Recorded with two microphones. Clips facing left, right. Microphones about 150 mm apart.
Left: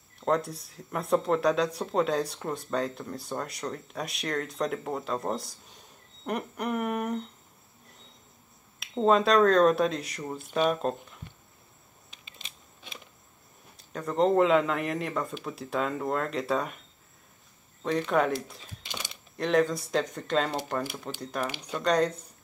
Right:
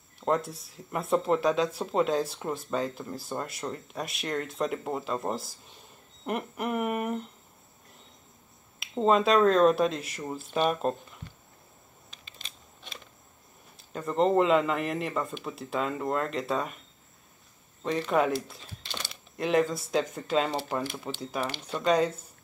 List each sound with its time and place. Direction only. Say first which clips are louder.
0.2 s speech: left 1 dB; centre (ahead or behind)
8.7 s speech: left 1 dB; centre (ahead or behind)
12.3 s a sound: left 1 dB; 15° left (ahead or behind)
13.7 s speech: even; centre (ahead or behind)
17.8 s speech: even; centre (ahead or behind)
18.8 s typewriter: even; 15° left (ahead or behind)
19.3 s speech: left 1 dB; centre (ahead or behind)